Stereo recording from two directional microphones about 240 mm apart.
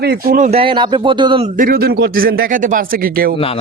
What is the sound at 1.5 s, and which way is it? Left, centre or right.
Speech, right.